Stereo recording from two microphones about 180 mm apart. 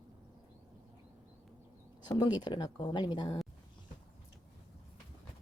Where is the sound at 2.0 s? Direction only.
25° left (ahead or behind).